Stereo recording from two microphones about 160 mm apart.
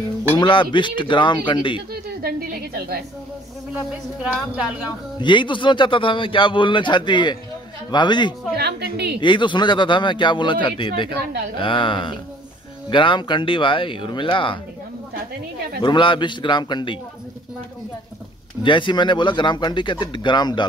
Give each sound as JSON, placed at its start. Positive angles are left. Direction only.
{"t": 0.4, "sound": "a man's voice", "side_deg": 30}
{"t": 4.2, "sound": "a woman's voice", "side_deg": -5}
{"t": 5.2, "sound": "a man's voice", "side_deg": 30}
{"t": 8.5, "sound": "a woman's voice", "side_deg": -90}
{"t": 9.2, "sound": "a man's voice", "side_deg": 30}
{"t": 15.8, "sound": "speech", "side_deg": 30}
{"t": 18.6, "sound": "speech", "side_deg": 30}